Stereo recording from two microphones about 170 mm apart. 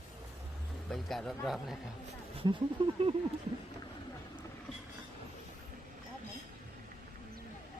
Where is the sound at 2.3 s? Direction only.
30° right (ahead or behind).